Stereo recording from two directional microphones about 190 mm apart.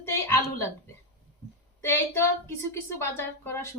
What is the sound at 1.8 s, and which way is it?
Speech, 15° left (ahead or behind).